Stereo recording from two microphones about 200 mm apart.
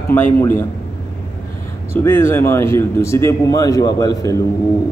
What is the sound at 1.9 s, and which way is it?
A man's voice, 10° left (ahead or behind).